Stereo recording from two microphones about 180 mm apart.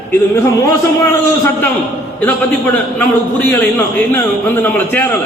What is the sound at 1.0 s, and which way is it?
A man's voice, 15° left (ahead or behind).